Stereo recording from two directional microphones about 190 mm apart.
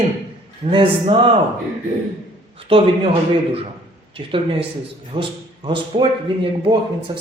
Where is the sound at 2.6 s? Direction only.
30° right (ahead or behind).